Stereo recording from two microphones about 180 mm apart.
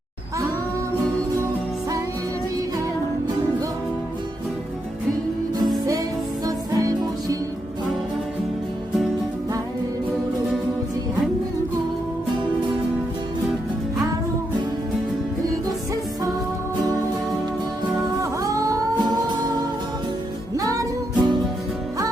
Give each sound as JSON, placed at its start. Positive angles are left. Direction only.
{"t": 6.4, "sound": "music", "side_deg": -20}
{"t": 18.2, "sound": "music", "side_deg": -20}